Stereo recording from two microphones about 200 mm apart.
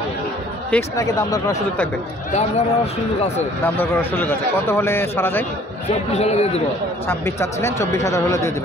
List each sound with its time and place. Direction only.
0.7 s a man's voice: 15° left (ahead or behind)
2.3 s a man's voice: 35° left (ahead or behind)
3.6 s a man's voice: 10° left (ahead or behind)
6.1 s a man's voice: 35° left (ahead or behind)
7.1 s a man's voice: 15° left (ahead or behind)